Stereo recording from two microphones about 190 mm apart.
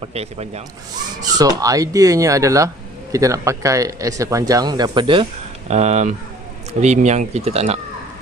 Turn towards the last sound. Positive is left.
turn(degrees=-35)  # may be behind; listen again after turning